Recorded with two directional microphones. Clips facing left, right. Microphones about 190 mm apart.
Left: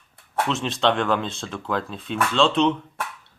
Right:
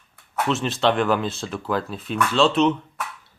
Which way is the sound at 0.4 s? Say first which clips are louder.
Right 2 dB; centre (ahead or behind).